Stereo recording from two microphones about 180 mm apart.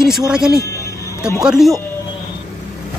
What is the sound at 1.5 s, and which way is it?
Speech, centre (ahead or behind).